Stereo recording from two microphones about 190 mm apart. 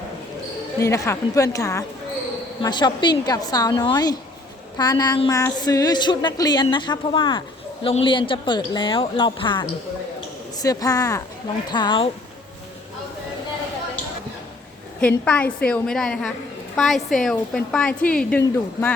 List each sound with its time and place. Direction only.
0.8 s a woman's voice: 15° left (ahead or behind)
15.0 s a woman's voice: 5° left (ahead or behind)